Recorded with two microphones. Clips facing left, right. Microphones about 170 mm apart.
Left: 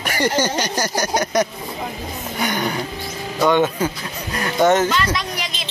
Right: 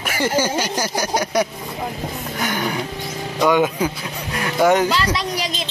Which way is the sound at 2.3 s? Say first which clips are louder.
Left 1 dB; 5° right (ahead or behind).